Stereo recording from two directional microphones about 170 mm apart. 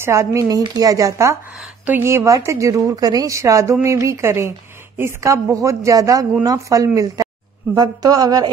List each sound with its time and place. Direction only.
0.0 s a woman's voice: 15° right (ahead or behind)